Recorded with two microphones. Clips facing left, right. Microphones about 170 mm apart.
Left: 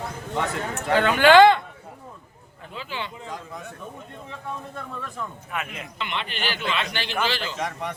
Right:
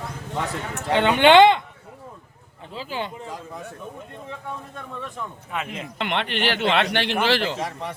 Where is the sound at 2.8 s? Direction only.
40° right (ahead or behind).